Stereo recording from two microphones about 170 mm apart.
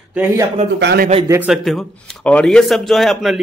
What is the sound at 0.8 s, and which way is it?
Speech, 75° right (ahead or behind).